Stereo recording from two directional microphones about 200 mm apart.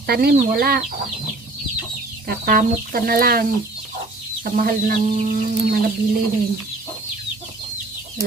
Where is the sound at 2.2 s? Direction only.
45° right (ahead or behind).